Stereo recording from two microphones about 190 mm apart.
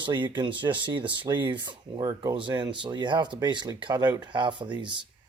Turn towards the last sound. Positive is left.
turn(degrees=-25)  # may be behind; listen again after turning